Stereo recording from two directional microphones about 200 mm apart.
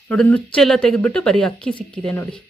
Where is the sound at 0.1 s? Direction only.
5° left (ahead or behind).